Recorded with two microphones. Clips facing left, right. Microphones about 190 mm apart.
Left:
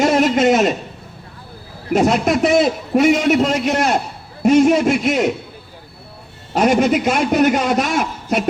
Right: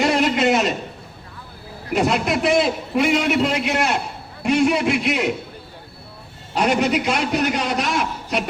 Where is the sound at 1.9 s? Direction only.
45° left (ahead or behind).